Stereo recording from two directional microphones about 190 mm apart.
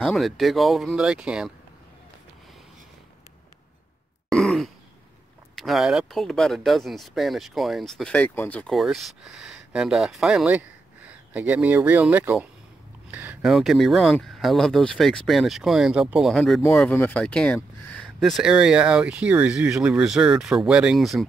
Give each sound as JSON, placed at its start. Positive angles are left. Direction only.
{"t": 0.0, "sound": "speech", "side_deg": 0}
{"t": 4.3, "sound": "sigh", "side_deg": 0}
{"t": 5.6, "sound": "speech", "side_deg": 0}